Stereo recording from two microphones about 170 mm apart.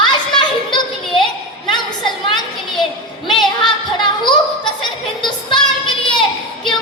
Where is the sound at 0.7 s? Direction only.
30° left (ahead or behind).